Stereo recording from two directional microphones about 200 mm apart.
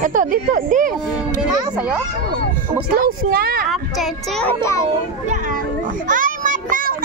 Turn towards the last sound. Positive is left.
turn(degrees=-40)  # may be behind; listen again after turning